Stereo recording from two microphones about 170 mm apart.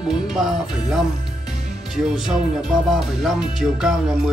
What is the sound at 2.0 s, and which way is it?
Speech, 5° right (ahead or behind).